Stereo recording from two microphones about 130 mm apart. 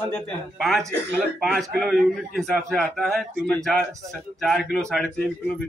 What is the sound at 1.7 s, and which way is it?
A woman's voice, centre (ahead or behind).